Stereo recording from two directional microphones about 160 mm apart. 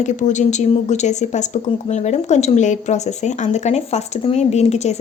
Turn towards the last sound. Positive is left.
turn(degrees=45)  # may be behind; listen again after turning